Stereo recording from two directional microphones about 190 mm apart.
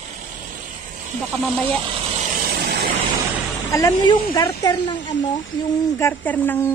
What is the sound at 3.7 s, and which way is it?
Speech, 20° left (ahead or behind).